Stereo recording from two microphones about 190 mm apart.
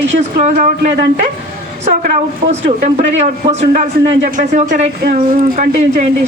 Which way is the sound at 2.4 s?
40° right (ahead or behind).